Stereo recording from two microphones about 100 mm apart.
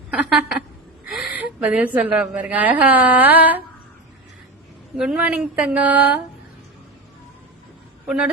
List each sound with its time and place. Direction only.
0.2 s a woman's voice: 5° right (ahead or behind)
1.1 s a sound: centre (ahead or behind)
1.4 s speech: 15° right (ahead or behind)
4.9 s speech: 10° right (ahead or behind)
8.0 s speech: 10° right (ahead or behind)